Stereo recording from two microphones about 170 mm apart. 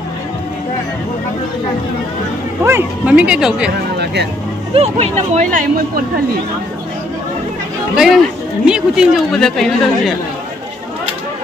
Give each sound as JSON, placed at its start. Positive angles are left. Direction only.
{"t": 2.6, "sound": "speech", "side_deg": -10}
{"t": 3.9, "sound": "music", "side_deg": -75}
{"t": 4.7, "sound": "speech", "side_deg": -40}
{"t": 7.9, "sound": "speech", "side_deg": -5}